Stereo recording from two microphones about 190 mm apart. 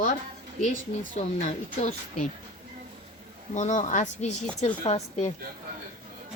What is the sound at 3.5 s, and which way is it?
Speech, 40° left (ahead or behind).